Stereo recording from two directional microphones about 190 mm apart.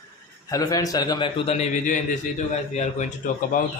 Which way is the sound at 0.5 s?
20° left (ahead or behind).